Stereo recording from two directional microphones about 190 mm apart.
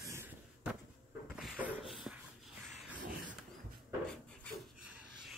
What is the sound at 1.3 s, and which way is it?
Beatboxing, 5° right (ahead or behind).